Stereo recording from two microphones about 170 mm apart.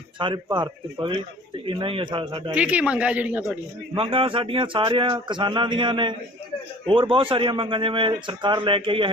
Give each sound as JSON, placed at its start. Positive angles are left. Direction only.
{"t": 0.2, "sound": "a man's voice", "side_deg": -30}
{"t": 2.6, "sound": "speech", "side_deg": -10}
{"t": 3.9, "sound": "a man's voice", "side_deg": -30}